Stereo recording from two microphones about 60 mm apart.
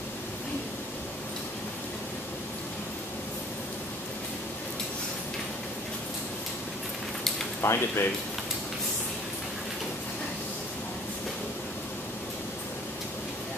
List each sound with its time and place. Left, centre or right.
7.6 s speech: left